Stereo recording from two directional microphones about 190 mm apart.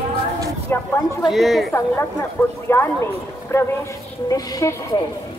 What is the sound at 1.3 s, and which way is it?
Speech, centre (ahead or behind).